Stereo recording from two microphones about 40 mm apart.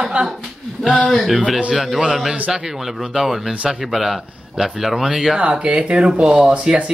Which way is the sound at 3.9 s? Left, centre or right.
Centre.